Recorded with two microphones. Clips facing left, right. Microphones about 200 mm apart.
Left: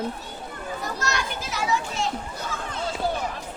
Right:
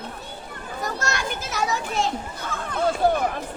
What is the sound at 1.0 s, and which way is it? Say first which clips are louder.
Children playing: right 1 dB; 45° right (ahead or behind).